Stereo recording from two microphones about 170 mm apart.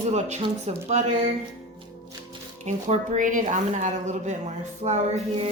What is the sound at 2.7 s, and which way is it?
Speech, 45° right (ahead or behind).